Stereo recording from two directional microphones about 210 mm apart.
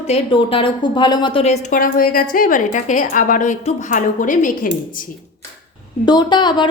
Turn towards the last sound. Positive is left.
turn(degrees=20)  # may be behind; listen again after turning